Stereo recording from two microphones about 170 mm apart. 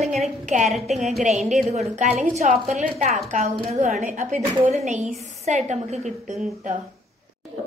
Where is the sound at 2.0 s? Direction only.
40° right (ahead or behind).